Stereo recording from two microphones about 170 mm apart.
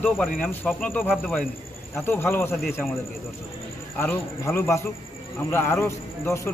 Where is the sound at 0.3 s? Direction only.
5° left (ahead or behind).